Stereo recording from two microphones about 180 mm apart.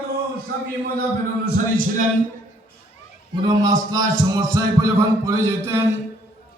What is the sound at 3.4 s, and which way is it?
A man's voice, 20° right (ahead or behind).